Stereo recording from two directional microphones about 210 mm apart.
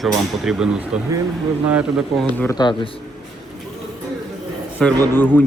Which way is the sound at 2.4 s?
15° left (ahead or behind).